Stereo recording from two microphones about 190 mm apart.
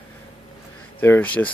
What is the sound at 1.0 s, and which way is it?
Speech, 10° left (ahead or behind).